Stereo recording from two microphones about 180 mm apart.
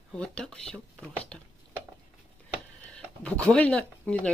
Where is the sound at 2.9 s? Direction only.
5° left (ahead or behind).